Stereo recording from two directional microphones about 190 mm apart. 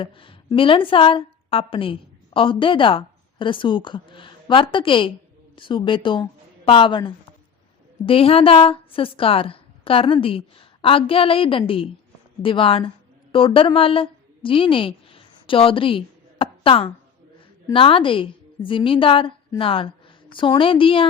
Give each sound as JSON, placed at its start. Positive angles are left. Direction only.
{"t": 0.0, "sound": "a woman's voice", "side_deg": 25}